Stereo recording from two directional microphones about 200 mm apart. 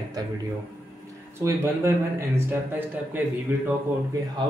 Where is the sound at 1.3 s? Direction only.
15° right (ahead or behind).